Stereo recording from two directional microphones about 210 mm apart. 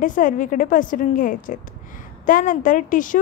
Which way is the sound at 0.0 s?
40° left (ahead or behind).